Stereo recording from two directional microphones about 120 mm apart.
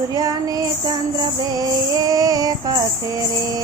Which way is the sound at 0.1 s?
30° right (ahead or behind).